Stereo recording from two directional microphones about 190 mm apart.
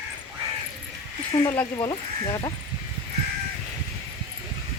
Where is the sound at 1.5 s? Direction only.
20° left (ahead or behind).